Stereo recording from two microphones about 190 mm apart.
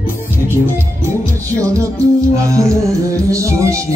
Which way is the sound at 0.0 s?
10° right (ahead or behind).